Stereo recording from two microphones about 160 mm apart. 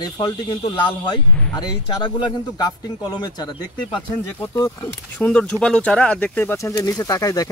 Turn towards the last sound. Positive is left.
turn(degrees=20)  # may be behind; listen again after turning